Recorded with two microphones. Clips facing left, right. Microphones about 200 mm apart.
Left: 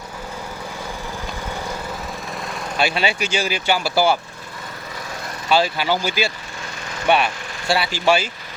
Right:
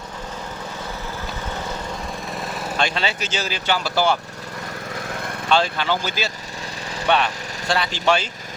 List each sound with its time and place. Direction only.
2.3 s lawn mower: centre (ahead or behind)
2.7 s speech: 10° left (ahead or behind)
5.0 s lawn mower: 55° right (ahead or behind)
5.5 s speech: 5° left (ahead or behind)